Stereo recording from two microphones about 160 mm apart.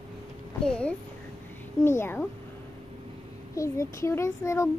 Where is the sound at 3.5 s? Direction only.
20° left (ahead or behind).